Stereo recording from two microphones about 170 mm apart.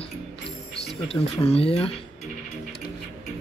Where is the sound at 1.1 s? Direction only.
35° left (ahead or behind).